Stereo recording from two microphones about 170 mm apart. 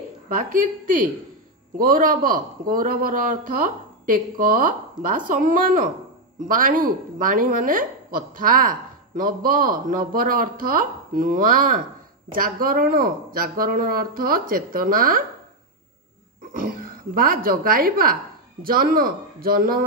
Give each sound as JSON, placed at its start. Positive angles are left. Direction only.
{"t": 0.3, "sound": "a woman's voice", "side_deg": -55}
{"t": 16.5, "sound": "a woman's voice", "side_deg": -55}